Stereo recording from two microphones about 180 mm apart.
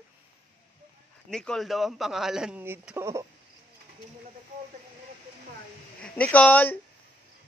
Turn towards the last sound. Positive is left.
turn(degrees=10)  # may be behind; listen again after turning